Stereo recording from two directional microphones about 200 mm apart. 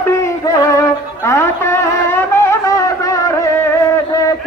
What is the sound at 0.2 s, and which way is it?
Music, 15° left (ahead or behind).